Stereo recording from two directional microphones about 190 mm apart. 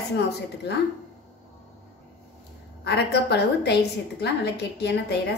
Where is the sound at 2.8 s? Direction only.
60° left (ahead or behind).